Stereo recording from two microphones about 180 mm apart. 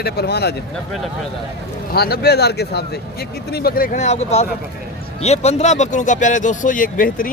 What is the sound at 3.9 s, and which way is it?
Speech, 40° left (ahead or behind).